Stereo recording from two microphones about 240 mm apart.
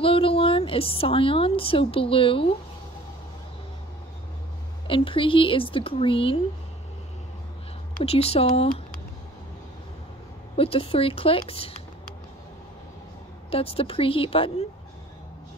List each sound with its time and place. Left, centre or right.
0.0 s a woman's voice: left
4.8 s a woman's voice: left
7.9 s a woman's voice: left
10.5 s a woman's voice: left
13.5 s a woman's voice: left